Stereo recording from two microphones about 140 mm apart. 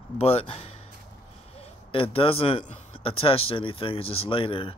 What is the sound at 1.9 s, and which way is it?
Speech, 40° left (ahead or behind).